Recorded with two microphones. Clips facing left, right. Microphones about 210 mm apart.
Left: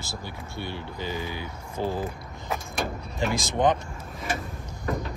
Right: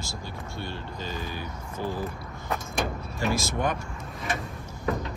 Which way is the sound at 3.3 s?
20° left (ahead or behind).